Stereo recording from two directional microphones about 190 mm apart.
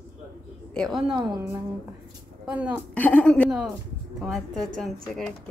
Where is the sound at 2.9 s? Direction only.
5° left (ahead or behind).